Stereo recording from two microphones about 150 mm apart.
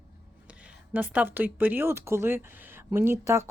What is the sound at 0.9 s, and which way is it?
Speech, 10° right (ahead or behind).